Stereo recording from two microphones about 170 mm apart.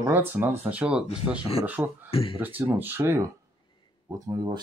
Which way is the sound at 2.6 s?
10° right (ahead or behind).